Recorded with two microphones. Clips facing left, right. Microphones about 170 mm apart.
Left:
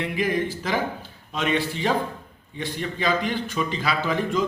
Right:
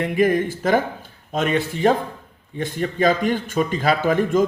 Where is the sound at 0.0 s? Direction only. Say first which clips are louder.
Right 6 dB; 50° right (ahead or behind).